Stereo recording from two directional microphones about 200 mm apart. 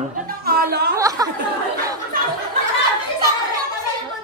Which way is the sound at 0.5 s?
50° right (ahead or behind).